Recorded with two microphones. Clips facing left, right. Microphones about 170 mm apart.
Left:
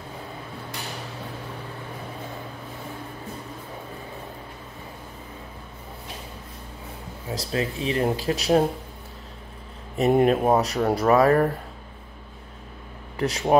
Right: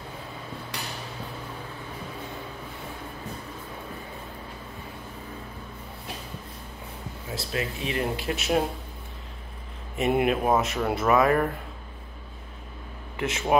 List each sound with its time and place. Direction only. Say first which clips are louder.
7.2 s speech: left 4 dB; 30° left (ahead or behind)
9.9 s speech: left 5 dB; 40° left (ahead or behind)
13.2 s speech: left 3 dB; 35° left (ahead or behind)